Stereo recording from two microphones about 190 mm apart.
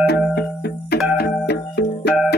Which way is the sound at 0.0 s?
60° left (ahead or behind).